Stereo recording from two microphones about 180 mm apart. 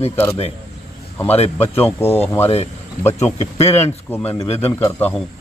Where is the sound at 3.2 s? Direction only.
35° left (ahead or behind).